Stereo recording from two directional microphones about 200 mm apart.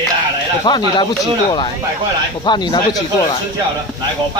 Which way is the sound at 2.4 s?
20° left (ahead or behind).